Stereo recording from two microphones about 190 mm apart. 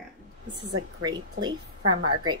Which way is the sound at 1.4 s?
60° right (ahead or behind).